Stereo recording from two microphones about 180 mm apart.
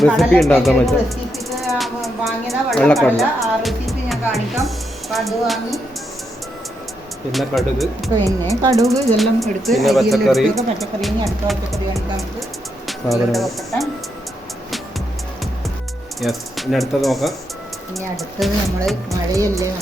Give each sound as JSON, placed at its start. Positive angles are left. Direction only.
{"t": 0.0, "sound": "speech", "side_deg": 0}
{"t": 1.5, "sound": "a sound", "side_deg": 0}
{"t": 7.3, "sound": "speech", "side_deg": 0}
{"t": 8.6, "sound": "speech", "side_deg": -20}
{"t": 9.1, "sound": "speech", "side_deg": 0}
{"t": 16.2, "sound": "speech", "side_deg": 0}
{"t": 19.3, "sound": "speech", "side_deg": -15}